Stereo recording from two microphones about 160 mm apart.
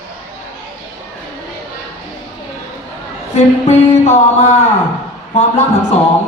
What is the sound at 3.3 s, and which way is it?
Speech, 45° left (ahead or behind).